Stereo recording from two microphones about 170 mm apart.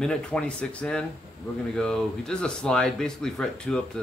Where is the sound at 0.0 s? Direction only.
5° left (ahead or behind).